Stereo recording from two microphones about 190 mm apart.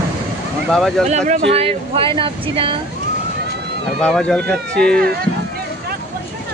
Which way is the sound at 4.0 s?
5° left (ahead or behind).